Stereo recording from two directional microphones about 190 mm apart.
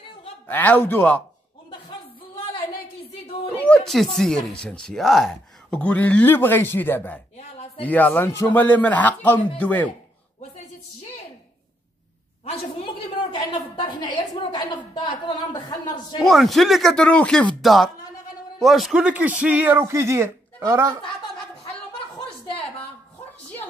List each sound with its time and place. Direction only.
0.5 s speech: 10° left (ahead or behind)
2.5 s a sound: 30° left (ahead or behind)
3.4 s speech: 5° left (ahead or behind)
7.3 s a sound: 35° left (ahead or behind)
7.8 s speech: 10° left (ahead or behind)
13.3 s a woman's voice: 25° left (ahead or behind)
16.2 s speech: centre (ahead or behind)